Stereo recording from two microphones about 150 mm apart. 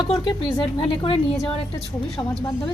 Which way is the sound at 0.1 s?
40° left (ahead or behind).